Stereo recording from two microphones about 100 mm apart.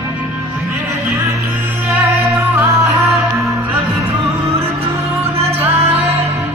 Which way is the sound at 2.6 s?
30° right (ahead or behind).